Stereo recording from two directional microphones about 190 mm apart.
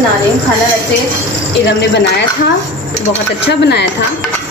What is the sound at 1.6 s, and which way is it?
Speech, 65° left (ahead or behind).